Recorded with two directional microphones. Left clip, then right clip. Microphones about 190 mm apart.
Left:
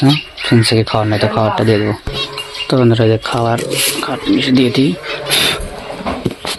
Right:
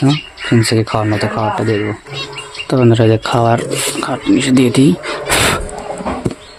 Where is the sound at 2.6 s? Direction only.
10° right (ahead or behind); by 5.2 s 25° right (ahead or behind).